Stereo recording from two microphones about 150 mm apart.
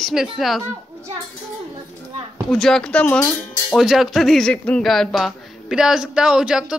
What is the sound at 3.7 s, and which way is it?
Speech, centre (ahead or behind).